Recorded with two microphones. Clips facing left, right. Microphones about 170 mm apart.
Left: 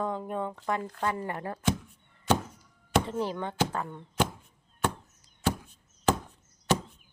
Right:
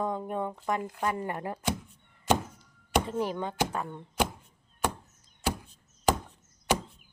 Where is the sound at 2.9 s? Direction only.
15° right (ahead or behind).